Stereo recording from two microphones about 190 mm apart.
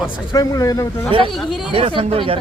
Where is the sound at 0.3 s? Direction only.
20° left (ahead or behind).